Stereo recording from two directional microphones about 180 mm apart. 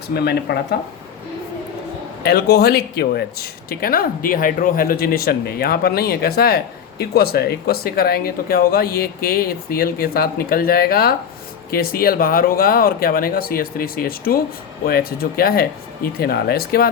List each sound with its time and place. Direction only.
0.1 s speech: 60° left (ahead or behind)
2.2 s speech: 60° left (ahead or behind)